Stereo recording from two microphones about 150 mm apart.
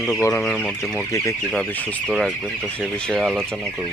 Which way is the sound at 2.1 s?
Centre (ahead or behind).